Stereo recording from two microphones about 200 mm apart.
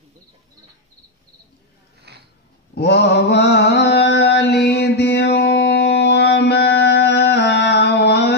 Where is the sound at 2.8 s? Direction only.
55° left (ahead or behind).